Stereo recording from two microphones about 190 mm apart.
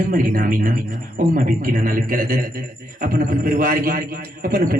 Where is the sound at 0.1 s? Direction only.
50° right (ahead or behind).